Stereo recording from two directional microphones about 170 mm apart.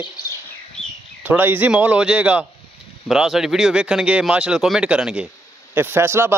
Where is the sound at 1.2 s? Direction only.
10° right (ahead or behind).